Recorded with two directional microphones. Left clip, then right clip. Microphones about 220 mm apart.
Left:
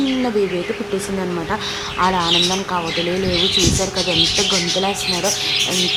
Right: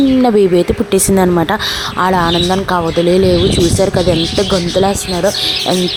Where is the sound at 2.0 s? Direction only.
30° right (ahead or behind).